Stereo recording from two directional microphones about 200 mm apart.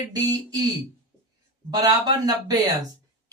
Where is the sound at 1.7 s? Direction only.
20° right (ahead or behind).